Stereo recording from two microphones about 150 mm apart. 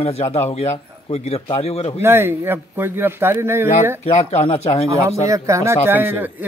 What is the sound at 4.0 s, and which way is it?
Speech, 45° left (ahead or behind).